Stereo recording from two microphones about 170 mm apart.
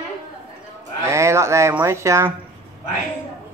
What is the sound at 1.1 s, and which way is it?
Speech, 15° right (ahead or behind).